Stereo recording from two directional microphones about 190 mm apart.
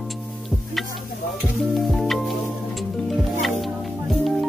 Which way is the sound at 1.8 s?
Centre (ahead or behind).